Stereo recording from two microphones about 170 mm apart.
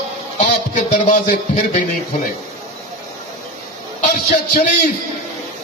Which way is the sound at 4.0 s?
45° left (ahead or behind).